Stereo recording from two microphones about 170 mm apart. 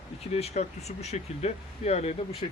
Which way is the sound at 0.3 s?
40° left (ahead or behind).